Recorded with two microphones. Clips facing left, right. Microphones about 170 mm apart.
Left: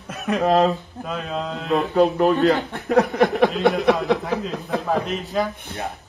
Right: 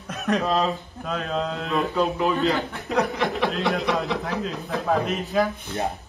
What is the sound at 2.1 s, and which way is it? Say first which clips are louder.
A man's voice: left 5 dB; 55° left (ahead or behind).